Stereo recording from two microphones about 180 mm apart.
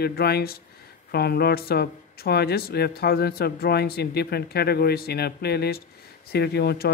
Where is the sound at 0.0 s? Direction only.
60° left (ahead or behind).